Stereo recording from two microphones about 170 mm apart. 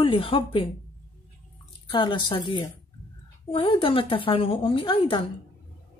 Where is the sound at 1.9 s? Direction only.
30° left (ahead or behind).